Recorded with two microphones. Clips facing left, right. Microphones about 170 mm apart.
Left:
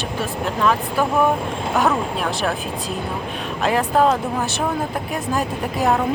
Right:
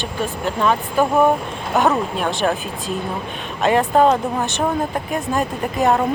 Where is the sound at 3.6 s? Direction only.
Centre (ahead or behind).